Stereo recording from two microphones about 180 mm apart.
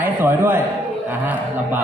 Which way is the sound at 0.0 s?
10° right (ahead or behind).